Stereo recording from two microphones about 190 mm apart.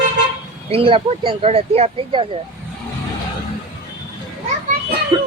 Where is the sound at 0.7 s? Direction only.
30° right (ahead or behind).